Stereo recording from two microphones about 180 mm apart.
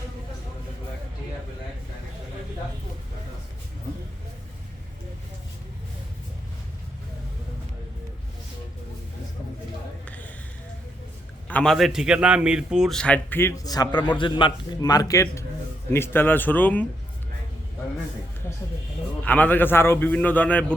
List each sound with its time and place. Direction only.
10.1 s a sound: 10° left (ahead or behind)
11.4 s a man's voice: 5° left (ahead or behind)
19.2 s a man's voice: 10° left (ahead or behind)